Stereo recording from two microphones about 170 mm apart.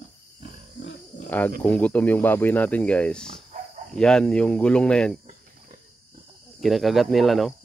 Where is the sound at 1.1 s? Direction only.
50° left (ahead or behind).